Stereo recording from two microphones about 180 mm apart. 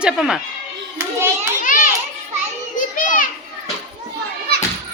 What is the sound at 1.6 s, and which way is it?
Children playing, 45° left (ahead or behind).